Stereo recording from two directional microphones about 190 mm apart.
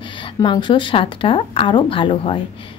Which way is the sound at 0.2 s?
25° left (ahead or behind).